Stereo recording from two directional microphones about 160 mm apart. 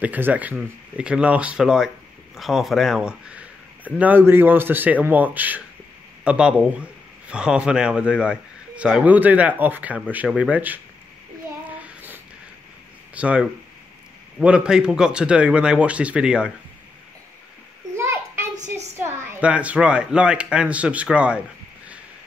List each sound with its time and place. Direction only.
0.0 s a man's voice: 10° right (ahead or behind)
13.1 s a man's voice: 5° right (ahead or behind)
17.9 s a sound: 15° right (ahead or behind)
18.9 s a man's voice: 15° right (ahead or behind)